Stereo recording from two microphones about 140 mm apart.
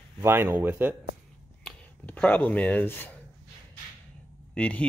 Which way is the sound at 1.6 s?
10° left (ahead or behind).